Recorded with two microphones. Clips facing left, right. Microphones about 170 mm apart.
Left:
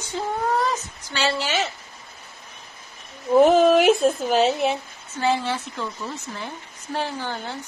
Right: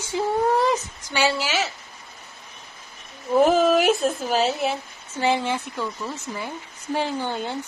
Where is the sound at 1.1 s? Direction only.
10° right (ahead or behind).